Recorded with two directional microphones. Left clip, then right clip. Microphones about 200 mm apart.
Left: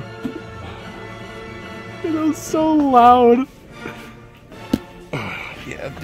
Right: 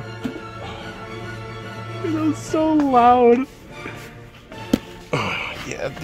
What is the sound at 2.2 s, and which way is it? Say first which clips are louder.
Speech: left 2 dB; 20° left (ahead or behind).